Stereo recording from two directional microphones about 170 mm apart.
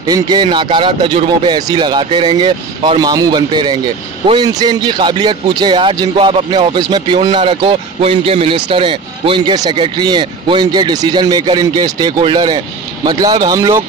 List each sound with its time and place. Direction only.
0.0 s a man's voice: 25° right (ahead or behind)